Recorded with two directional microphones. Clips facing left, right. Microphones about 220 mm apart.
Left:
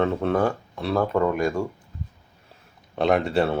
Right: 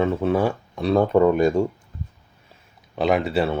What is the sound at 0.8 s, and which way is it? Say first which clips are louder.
Speech: right 5 dB; 20° right (ahead or behind).